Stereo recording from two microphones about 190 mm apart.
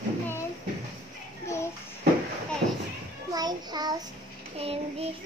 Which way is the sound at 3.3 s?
20° right (ahead or behind).